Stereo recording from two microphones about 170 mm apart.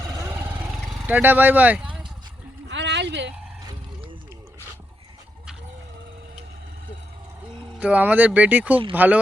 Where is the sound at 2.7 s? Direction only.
90° right.